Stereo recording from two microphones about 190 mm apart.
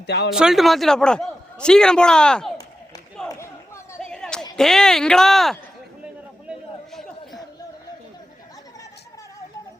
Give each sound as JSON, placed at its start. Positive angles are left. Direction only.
{"t": 0.0, "sound": "speech", "side_deg": 60}
{"t": 0.3, "sound": "a man's voice", "side_deg": 0}
{"t": 3.2, "sound": "a sound", "side_deg": 15}
{"t": 4.0, "sound": "a sound", "side_deg": 5}
{"t": 4.5, "sound": "a man's voice", "side_deg": 0}
{"t": 6.5, "sound": "chatter", "side_deg": 0}